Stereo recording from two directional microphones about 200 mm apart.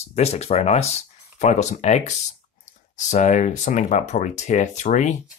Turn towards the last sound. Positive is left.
turn(degrees=35)  # may be behind; listen again after turning